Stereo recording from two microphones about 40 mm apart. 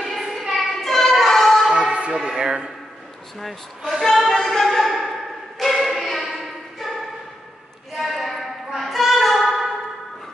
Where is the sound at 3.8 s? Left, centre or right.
Centre.